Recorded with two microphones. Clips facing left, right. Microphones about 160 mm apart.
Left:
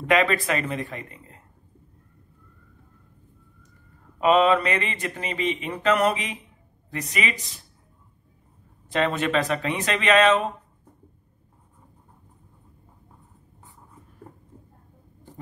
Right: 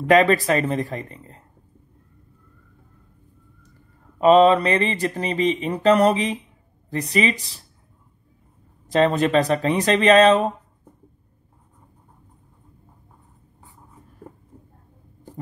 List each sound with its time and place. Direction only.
0.1 s speech: 40° right (ahead or behind)
4.2 s speech: 35° right (ahead or behind)
8.9 s speech: 35° right (ahead or behind)